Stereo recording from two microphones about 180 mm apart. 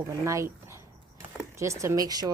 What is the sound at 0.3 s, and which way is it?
Speech, 15° right (ahead or behind).